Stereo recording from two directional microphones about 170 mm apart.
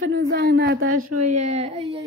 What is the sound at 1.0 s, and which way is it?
Speech, 45° right (ahead or behind).